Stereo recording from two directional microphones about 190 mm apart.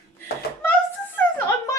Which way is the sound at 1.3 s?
10° left (ahead or behind).